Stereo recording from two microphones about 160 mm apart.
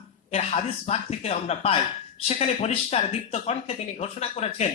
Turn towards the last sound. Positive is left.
turn(degrees=40)  # may be behind; listen again after turning